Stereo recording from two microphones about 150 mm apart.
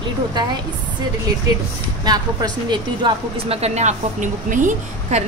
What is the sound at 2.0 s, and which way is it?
Speech, 25° right (ahead or behind).